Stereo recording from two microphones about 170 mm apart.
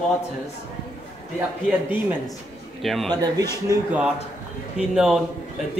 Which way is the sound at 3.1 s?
25° right (ahead or behind).